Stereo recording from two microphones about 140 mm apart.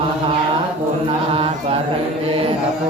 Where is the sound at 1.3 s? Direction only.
45° right (ahead or behind).